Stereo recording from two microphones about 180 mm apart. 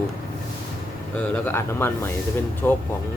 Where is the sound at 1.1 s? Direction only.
10° left (ahead or behind).